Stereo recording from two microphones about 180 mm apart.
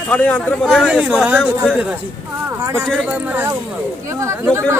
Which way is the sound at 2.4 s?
15° right (ahead or behind).